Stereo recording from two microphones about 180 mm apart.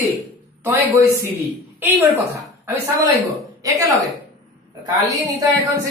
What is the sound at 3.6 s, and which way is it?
Speech, 20° right (ahead or behind).